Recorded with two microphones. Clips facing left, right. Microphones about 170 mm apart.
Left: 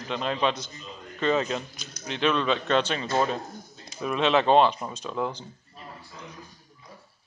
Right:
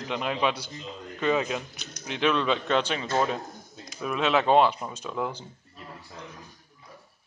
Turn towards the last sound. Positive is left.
turn(degrees=-10)  # may be behind; listen again after turning